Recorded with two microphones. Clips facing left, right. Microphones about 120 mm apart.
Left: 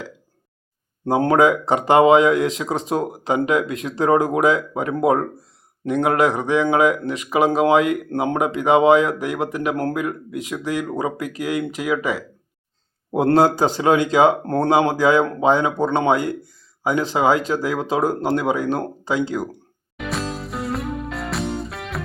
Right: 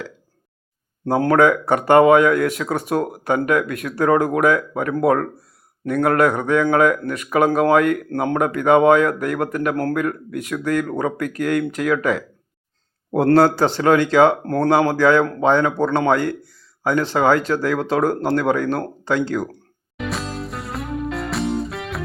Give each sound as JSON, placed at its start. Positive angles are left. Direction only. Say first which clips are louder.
{"t": 1.0, "sound": "speech", "louder": "right 1 dB", "side_deg": 20}
{"t": 13.2, "sound": "speech", "louder": "right 1 dB", "side_deg": 15}
{"t": 14.4, "sound": "speech", "louder": "right 1 dB", "side_deg": 25}
{"t": 20.0, "sound": "music", "louder": "even", "side_deg": 0}